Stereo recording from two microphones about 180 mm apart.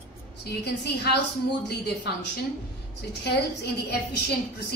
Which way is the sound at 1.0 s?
65° left (ahead or behind).